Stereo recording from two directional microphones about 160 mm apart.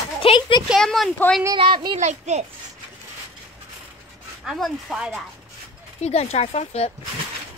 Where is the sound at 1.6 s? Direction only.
30° right (ahead or behind).